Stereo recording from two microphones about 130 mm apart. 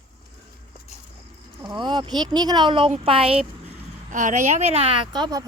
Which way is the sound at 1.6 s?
35° right (ahead or behind).